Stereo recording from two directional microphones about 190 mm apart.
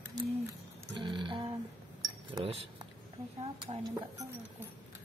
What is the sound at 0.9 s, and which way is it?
Speech, 25° right (ahead or behind).